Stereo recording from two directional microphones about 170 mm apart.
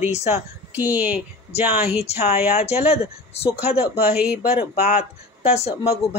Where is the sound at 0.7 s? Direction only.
10° right (ahead or behind).